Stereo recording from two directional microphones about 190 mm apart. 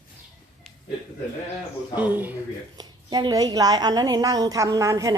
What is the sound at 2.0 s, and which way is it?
Speech, 10° right (ahead or behind).